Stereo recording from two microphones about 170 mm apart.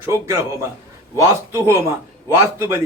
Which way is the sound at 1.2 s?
15° right (ahead or behind).